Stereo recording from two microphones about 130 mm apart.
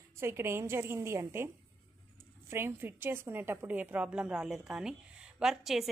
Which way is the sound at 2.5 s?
15° right (ahead or behind).